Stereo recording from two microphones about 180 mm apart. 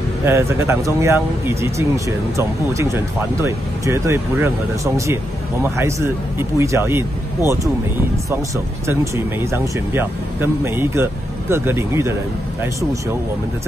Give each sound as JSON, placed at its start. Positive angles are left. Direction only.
{"t": 0.2, "sound": "speech", "side_deg": -15}
{"t": 8.8, "sound": "speech", "side_deg": -15}